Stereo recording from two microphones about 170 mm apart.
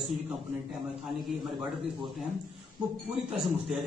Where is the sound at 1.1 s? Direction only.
Centre (ahead or behind).